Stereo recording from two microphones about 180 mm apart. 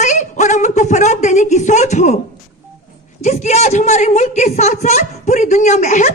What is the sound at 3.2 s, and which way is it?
Speech, 40° left (ahead or behind).